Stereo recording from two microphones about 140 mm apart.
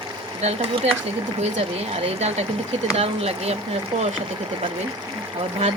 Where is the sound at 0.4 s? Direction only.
50° right (ahead or behind).